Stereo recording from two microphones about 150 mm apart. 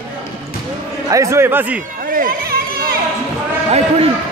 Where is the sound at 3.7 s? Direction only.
45° right (ahead or behind).